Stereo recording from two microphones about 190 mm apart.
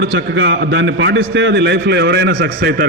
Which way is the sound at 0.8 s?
70° right (ahead or behind).